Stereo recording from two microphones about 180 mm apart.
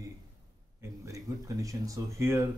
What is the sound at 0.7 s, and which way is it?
Speech, 15° right (ahead or behind).